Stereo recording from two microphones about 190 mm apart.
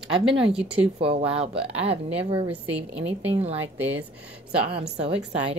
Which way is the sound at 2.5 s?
5° right (ahead or behind).